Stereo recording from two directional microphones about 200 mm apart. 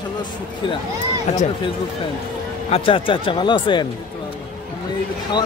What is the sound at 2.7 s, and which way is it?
Speech, 25° left (ahead or behind).